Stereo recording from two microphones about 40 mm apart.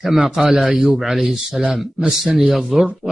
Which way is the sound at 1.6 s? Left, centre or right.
Right.